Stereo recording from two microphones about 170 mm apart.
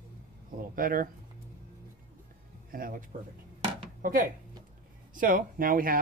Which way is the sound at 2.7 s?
55° right (ahead or behind).